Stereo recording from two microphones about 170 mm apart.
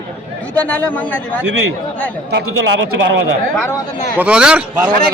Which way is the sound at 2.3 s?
90° right.